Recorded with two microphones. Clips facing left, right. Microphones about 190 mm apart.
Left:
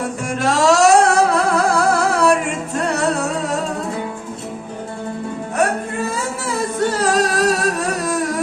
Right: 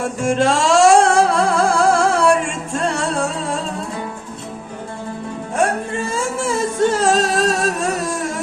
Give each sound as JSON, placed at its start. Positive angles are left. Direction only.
{"t": 0.3, "sound": "music", "side_deg": -30}
{"t": 6.1, "sound": "music", "side_deg": -25}